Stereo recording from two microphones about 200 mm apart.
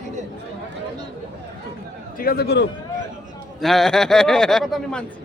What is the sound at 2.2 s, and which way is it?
Speech, 50° left (ahead or behind).